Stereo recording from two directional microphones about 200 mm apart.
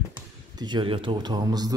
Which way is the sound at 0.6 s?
25° right (ahead or behind).